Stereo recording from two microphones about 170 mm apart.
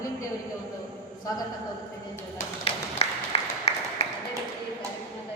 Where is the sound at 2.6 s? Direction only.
35° left (ahead or behind).